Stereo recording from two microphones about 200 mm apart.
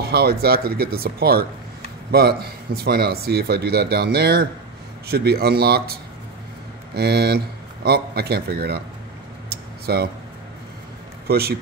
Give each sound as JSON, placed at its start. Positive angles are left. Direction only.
{"t": 0.0, "sound": "speech", "side_deg": -50}
{"t": 7.0, "sound": "speech", "side_deg": -55}
{"t": 9.5, "sound": "a sound", "side_deg": -50}
{"t": 11.2, "sound": "a man's voice", "side_deg": -50}